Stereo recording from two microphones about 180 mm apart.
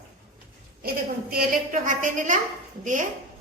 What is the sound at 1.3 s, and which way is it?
A woman's voice, 50° right (ahead or behind).